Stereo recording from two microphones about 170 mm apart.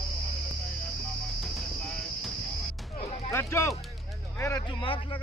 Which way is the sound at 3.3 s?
15° left (ahead or behind).